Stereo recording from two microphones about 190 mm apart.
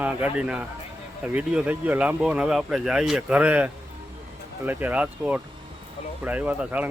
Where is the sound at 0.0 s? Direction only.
5° right (ahead or behind).